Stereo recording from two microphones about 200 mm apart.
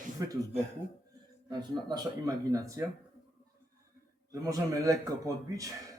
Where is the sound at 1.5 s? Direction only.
20° right (ahead or behind).